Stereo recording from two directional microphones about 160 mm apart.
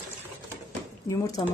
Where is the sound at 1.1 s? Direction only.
20° left (ahead or behind).